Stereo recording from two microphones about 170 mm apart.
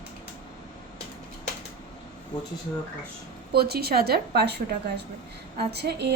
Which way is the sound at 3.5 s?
65° right (ahead or behind).